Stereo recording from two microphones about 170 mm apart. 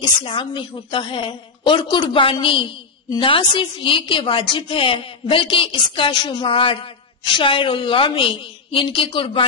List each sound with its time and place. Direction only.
0.2 s a woman's voice: 30° left (ahead or behind)